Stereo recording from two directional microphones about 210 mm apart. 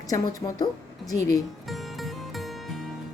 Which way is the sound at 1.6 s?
Centre (ahead or behind).